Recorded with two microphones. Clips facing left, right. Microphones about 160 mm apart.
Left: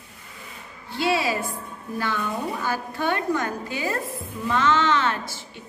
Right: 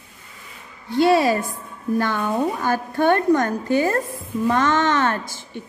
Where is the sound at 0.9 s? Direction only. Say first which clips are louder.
Right 7 dB; 50° right (ahead or behind).